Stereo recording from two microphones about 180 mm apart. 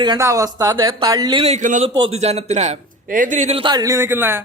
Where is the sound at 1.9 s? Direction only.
30° right (ahead or behind).